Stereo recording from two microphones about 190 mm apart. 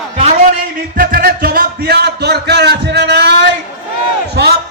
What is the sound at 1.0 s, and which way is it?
A man's voice, 50° right (ahead or behind).